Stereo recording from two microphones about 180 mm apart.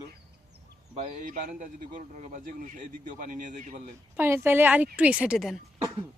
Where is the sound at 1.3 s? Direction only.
50° right (ahead or behind).